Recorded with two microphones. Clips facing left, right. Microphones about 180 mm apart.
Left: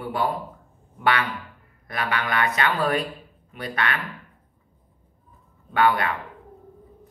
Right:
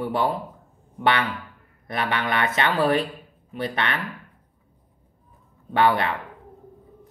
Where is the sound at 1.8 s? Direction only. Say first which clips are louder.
Right 2 dB; 25° right (ahead or behind).